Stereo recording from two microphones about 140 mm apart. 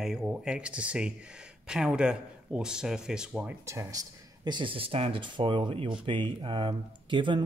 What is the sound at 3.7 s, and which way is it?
Speech, 25° right (ahead or behind).